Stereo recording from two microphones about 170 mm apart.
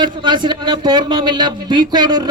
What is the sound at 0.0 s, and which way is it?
Speech, 25° right (ahead or behind).